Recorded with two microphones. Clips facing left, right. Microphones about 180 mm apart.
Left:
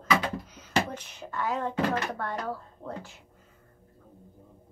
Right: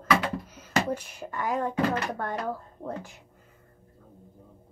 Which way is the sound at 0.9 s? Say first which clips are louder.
Even; 10° right (ahead or behind).